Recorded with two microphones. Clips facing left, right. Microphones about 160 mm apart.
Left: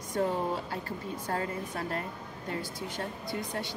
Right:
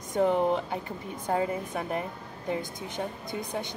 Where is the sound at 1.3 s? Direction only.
15° right (ahead or behind).